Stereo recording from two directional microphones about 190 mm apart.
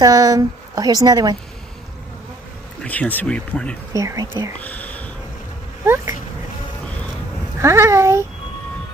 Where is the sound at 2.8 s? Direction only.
10° left (ahead or behind).